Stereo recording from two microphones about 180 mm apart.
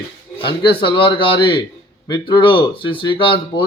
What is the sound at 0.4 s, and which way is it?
A man's voice, 30° left (ahead or behind).